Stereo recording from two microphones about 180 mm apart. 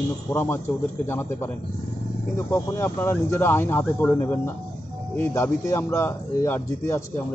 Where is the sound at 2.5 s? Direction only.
15° left (ahead or behind).